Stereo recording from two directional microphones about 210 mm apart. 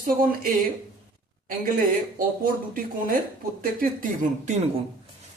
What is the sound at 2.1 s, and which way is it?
Speech, 40° right (ahead or behind).